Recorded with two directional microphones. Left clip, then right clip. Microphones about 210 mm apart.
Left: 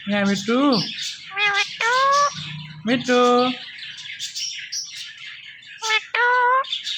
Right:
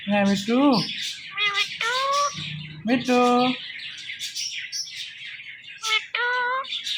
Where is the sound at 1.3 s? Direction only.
20° left (ahead or behind).